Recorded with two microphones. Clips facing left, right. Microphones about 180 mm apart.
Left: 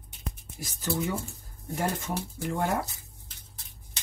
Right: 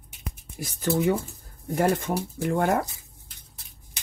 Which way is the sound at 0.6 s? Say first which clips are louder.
Right 7 dB; 60° right (ahead or behind).